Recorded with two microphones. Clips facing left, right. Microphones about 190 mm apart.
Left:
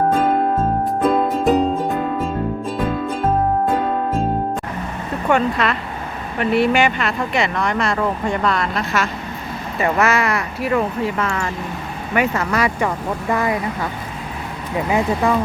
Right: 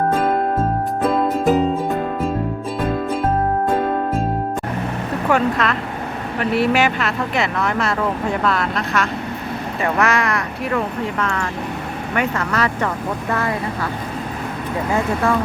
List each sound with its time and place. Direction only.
1.1 s music: centre (ahead or behind)
5.3 s speech: centre (ahead or behind); by 13.6 s 15° left (ahead or behind)
14.9 s speech: 15° left (ahead or behind)